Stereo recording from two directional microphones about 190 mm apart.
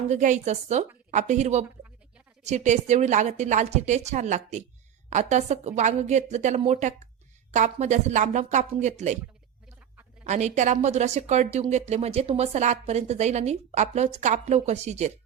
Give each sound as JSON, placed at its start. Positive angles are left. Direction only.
{"t": 0.1, "sound": "a woman's voice", "side_deg": -40}
{"t": 10.2, "sound": "a woman's voice", "side_deg": -40}